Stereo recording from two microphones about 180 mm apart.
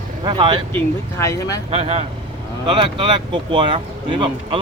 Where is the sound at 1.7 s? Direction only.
35° right (ahead or behind).